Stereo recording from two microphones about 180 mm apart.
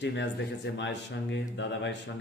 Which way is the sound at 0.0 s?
80° left.